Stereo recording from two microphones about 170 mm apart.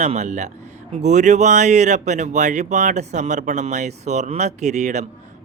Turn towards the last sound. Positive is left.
turn(degrees=-45)  # may be behind; listen again after turning